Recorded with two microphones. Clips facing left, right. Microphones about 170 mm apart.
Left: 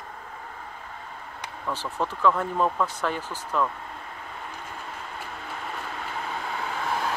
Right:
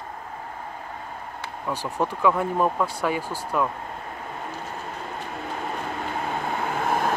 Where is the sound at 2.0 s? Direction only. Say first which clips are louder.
Right 2 dB; 15° right (ahead or behind).